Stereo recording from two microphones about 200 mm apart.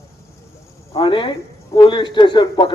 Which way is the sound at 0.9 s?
25° left (ahead or behind).